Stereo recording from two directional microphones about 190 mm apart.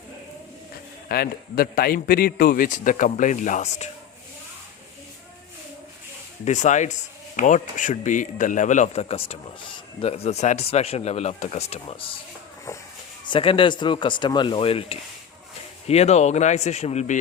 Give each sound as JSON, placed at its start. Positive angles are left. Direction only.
{"t": 1.0, "sound": "a man's voice", "side_deg": 55}
{"t": 6.4, "sound": "a man's voice", "side_deg": 40}
{"t": 13.2, "sound": "a man's voice", "side_deg": 25}